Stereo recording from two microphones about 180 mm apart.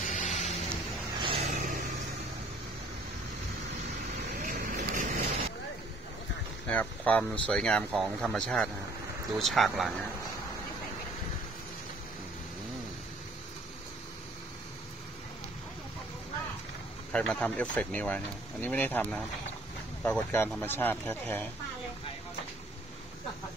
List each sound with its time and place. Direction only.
0.0 s a sound: 40° left (ahead or behind)
1.2 s vehicle: 30° right (ahead or behind)
1.5 s vehicle: 45° right (ahead or behind)
4.4 s vehicle: 50° right (ahead or behind)
6.7 s speech: 10° left (ahead or behind)
17.1 s speech: 5° left (ahead or behind)